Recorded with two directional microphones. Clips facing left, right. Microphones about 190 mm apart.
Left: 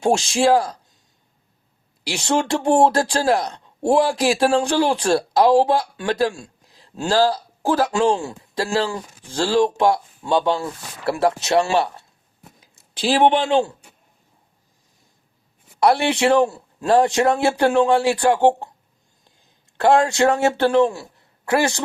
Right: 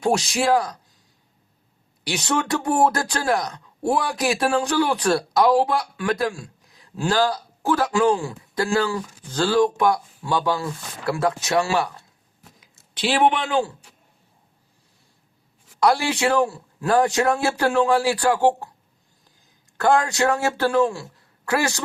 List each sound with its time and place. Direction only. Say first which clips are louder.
0.0 s speech: left 3 dB; 25° left (ahead or behind)
2.2 s speech: left 4 dB; 25° left (ahead or behind)
15.8 s speech: left 3 dB; 25° left (ahead or behind)
19.7 s speech: left 3 dB; 25° left (ahead or behind)